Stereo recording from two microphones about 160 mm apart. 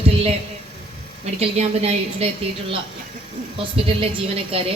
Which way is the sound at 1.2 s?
40° right (ahead or behind).